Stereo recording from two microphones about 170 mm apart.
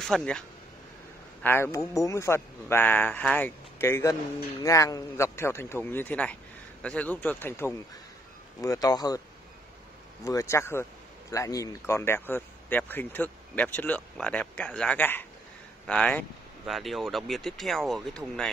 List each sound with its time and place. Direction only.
0.0 s speech: 5° left (ahead or behind)
1.4 s speech: 15° left (ahead or behind)
10.2 s speech: 15° left (ahead or behind)